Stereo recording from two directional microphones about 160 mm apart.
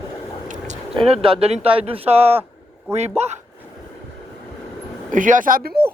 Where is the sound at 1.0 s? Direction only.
35° right (ahead or behind).